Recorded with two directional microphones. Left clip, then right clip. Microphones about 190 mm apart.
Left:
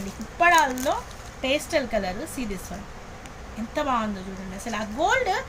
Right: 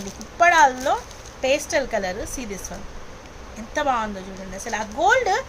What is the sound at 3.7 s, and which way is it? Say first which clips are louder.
Speech: right 3 dB; 45° right (ahead or behind).